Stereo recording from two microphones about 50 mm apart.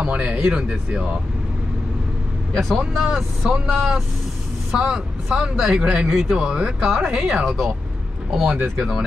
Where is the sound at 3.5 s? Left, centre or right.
Right.